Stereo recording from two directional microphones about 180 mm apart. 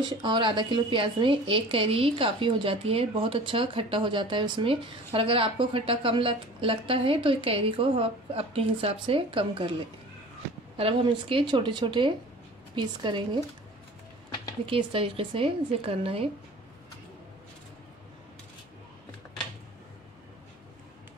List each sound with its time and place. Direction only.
0.0 s speech: 25° right (ahead or behind)
10.8 s speech: 30° right (ahead or behind)
14.7 s a woman's voice: 30° right (ahead or behind)